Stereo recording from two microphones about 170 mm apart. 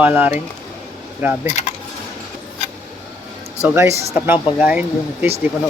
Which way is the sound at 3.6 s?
15° right (ahead or behind).